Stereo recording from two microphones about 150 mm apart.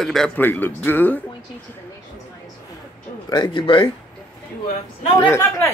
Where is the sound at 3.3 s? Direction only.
30° left (ahead or behind).